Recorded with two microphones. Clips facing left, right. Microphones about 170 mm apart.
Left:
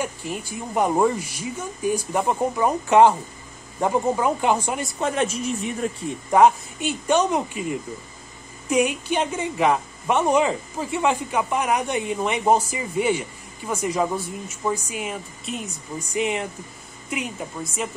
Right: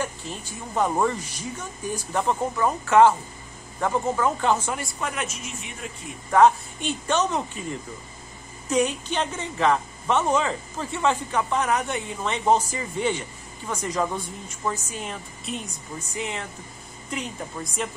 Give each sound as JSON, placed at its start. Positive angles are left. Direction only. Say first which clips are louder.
{"t": 0.0, "sound": "speech", "louder": "left 3 dB", "side_deg": 10}
{"t": 5.0, "sound": "a woman's voice", "louder": "left 11 dB", "side_deg": 30}
{"t": 6.3, "sound": "speech", "louder": "left 1 dB", "side_deg": 10}
{"t": 8.6, "sound": "speech", "louder": "left 2 dB", "side_deg": 10}
{"t": 16.2, "sound": "speech", "louder": "left 8 dB", "side_deg": 15}